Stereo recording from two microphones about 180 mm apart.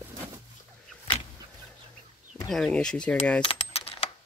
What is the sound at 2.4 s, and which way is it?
Speech, centre (ahead or behind).